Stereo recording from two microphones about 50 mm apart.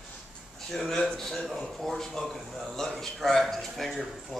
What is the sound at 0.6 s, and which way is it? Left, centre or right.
A man's voice, centre.